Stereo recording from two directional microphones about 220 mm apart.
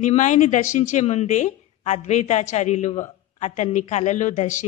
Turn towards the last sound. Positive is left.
turn(degrees=35)  # may be behind; listen again after turning